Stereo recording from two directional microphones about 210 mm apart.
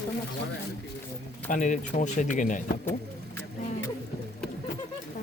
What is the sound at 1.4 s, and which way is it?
Speech, 35° left (ahead or behind).